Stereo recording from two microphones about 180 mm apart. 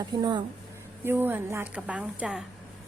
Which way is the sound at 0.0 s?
20° right (ahead or behind).